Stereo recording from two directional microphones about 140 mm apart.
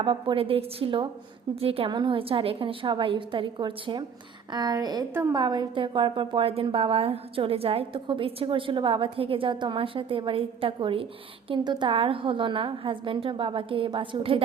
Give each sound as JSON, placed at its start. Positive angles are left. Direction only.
{"t": 0.0, "sound": "a woman's voice", "side_deg": -35}